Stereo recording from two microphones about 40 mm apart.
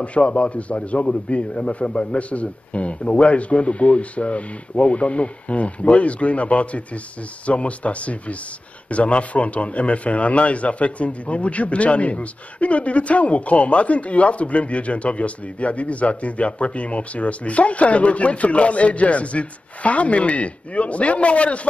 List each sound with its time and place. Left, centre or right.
0.0 s a man's voice: left